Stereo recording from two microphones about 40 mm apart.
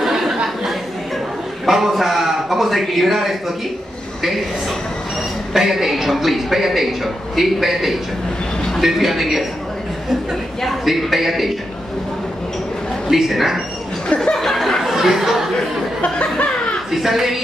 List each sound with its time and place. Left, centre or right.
0.0 s a sound: centre
1.7 s a man's voice: centre
5.5 s a man's voice: centre
10.9 s a man's voice: centre
13.1 s a man's voice: centre
14.0 s a sound: left
14.3 s chuckle: centre
16.0 s speech: left
16.9 s a woman's voice: centre